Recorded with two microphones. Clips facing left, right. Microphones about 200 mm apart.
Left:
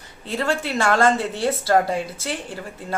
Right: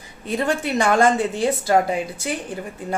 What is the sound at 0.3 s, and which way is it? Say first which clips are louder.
A woman's voice: right 2 dB; 20° right (ahead or behind).